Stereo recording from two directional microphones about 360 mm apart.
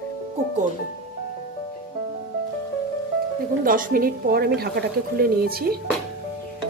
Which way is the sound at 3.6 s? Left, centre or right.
Right.